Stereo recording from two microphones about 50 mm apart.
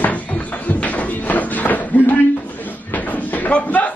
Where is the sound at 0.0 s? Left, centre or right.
Left.